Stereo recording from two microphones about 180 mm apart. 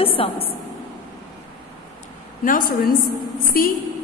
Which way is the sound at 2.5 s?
50° left (ahead or behind).